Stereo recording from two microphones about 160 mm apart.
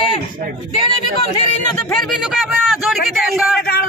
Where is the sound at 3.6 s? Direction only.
70° left (ahead or behind).